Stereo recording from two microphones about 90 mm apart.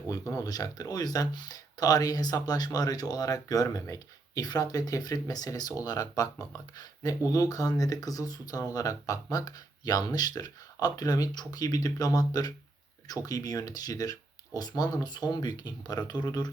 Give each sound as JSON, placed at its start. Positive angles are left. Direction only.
{"t": 0.1, "sound": "speech", "side_deg": 40}